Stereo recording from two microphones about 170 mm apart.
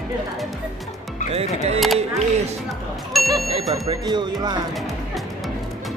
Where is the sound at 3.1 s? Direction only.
Centre (ahead or behind).